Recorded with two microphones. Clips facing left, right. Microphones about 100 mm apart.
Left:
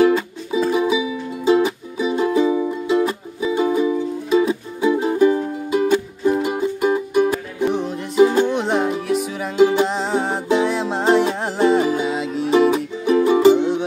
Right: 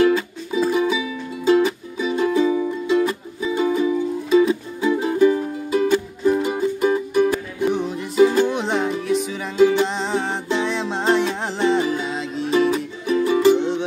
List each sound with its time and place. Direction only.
0.0 s music: 5° left (ahead or behind)
13.1 s music: 20° left (ahead or behind)